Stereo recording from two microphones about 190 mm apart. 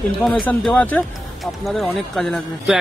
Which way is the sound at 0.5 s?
10° left (ahead or behind).